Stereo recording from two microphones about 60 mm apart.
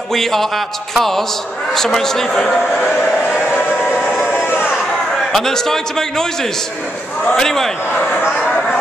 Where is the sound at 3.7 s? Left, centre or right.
Centre.